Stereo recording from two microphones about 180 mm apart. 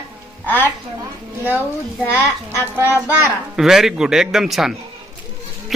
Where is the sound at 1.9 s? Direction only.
10° left (ahead or behind).